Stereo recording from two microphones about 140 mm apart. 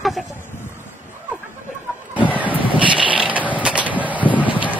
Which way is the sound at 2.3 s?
10° right (ahead or behind).